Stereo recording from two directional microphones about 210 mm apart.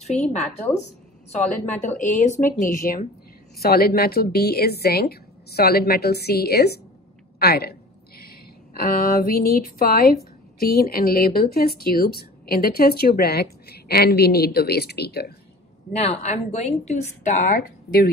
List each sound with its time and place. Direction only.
0.0 s a woman's voice: 30° left (ahead or behind); by 15.3 s 50° left (ahead or behind)
15.9 s a woman's voice: 30° left (ahead or behind)